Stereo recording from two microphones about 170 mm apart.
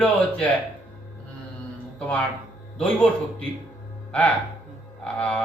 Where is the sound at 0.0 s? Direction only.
5° left (ahead or behind).